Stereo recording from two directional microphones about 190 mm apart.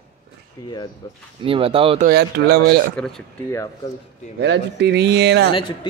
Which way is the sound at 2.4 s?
65° right (ahead or behind).